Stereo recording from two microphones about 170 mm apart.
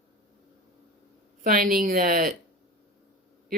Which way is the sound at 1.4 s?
55° right (ahead or behind).